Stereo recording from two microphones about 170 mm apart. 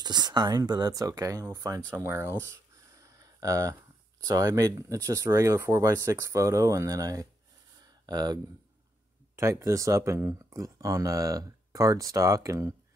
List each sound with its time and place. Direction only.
0.0 s speech: 25° right (ahead or behind)
1.9 s a sound: 15° right (ahead or behind)
4.2 s speech: 20° right (ahead or behind)
9.4 s speech: 15° right (ahead or behind)